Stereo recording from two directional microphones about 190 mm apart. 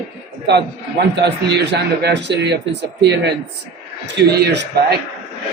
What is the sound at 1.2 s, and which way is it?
A man's voice, 65° right (ahead or behind).